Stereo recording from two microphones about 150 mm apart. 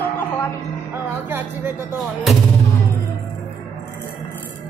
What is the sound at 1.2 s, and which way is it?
Music, 15° right (ahead or behind).